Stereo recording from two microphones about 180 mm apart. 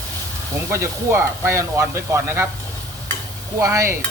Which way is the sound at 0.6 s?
15° right (ahead or behind).